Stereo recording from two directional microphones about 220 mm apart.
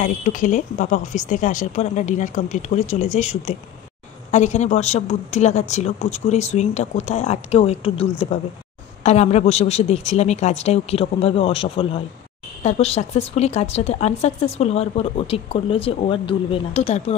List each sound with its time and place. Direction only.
0.0 s a woman's voice: 35° left (ahead or behind)